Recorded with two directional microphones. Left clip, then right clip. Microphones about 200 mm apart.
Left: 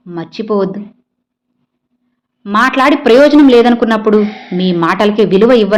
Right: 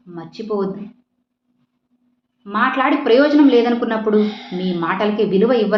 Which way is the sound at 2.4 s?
55° left (ahead or behind).